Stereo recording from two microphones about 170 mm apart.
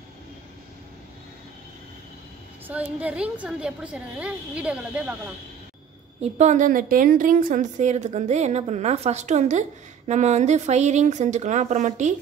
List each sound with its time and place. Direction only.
2.7 s a woman's voice: 10° right (ahead or behind)
6.2 s a woman's voice: 40° right (ahead or behind)